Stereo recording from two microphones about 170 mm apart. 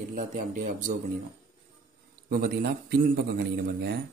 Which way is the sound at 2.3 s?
60° right (ahead or behind).